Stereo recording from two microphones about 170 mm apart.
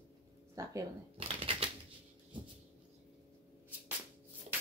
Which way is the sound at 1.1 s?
35° right (ahead or behind).